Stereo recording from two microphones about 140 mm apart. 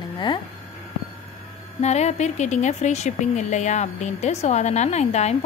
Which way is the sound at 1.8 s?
50° left (ahead or behind).